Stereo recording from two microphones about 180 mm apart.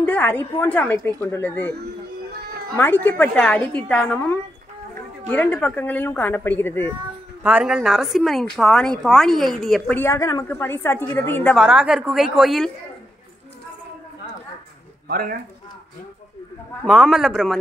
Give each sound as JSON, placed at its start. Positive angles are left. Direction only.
{"t": 0.0, "sound": "a woman's voice", "side_deg": 10}
{"t": 2.7, "sound": "a woman's voice", "side_deg": 10}
{"t": 7.4, "sound": "a woman's voice", "side_deg": -5}
{"t": 11.5, "sound": "a woman's voice", "side_deg": -5}
{"t": 15.0, "sound": "speech", "side_deg": -55}
{"t": 16.8, "sound": "a woman's voice", "side_deg": -5}